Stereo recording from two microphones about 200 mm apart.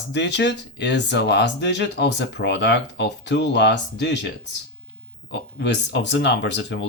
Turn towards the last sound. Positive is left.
turn(degrees=60)  # may be behind; listen again after turning